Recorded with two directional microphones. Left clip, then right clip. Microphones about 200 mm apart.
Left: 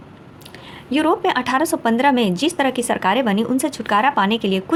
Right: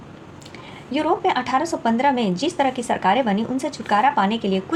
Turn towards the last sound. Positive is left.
turn(degrees=30)  # may be behind; listen again after turning